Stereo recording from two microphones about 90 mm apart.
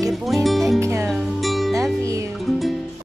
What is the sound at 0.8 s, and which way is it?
Music, 30° right (ahead or behind).